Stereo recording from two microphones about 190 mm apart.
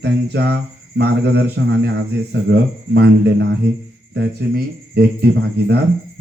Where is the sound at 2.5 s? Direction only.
65° right (ahead or behind).